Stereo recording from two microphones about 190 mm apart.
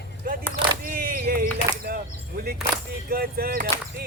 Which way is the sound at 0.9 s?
50° right (ahead or behind).